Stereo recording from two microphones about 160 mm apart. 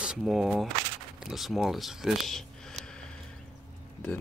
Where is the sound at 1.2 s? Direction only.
Centre (ahead or behind).